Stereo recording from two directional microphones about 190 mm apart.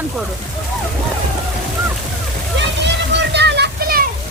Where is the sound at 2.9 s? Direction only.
65° right (ahead or behind).